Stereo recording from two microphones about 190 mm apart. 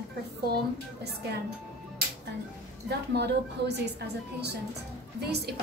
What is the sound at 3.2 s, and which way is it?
Speech, 60° right (ahead or behind).